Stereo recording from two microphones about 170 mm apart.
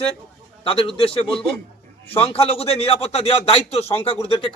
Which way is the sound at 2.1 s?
35° left (ahead or behind).